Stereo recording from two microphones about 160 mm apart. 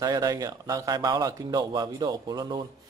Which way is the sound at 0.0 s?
20° right (ahead or behind).